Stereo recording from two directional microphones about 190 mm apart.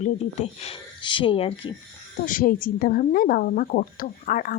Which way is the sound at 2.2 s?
45° left (ahead or behind).